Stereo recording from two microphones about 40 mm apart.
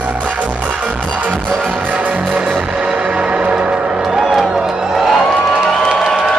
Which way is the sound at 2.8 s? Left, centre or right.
Right.